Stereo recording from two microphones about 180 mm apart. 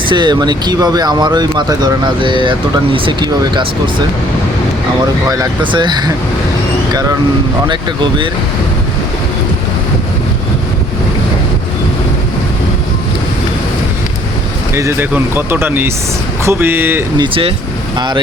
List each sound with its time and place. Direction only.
0.1 s speech: 25° right (ahead or behind)
5.3 s speech: 25° right (ahead or behind)
14.8 s speech: 15° right (ahead or behind)
17.2 s speech: 30° right (ahead or behind)